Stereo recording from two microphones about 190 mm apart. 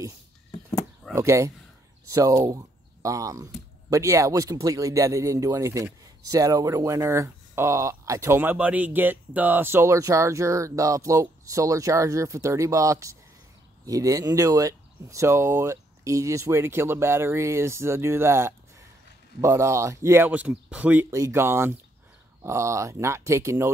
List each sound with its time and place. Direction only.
1.1 s speech: 15° right (ahead or behind)